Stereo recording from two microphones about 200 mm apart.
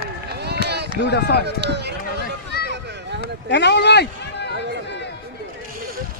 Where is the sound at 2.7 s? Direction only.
60° right (ahead or behind).